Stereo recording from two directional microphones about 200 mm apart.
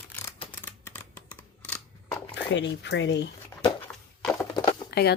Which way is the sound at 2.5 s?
60° left (ahead or behind).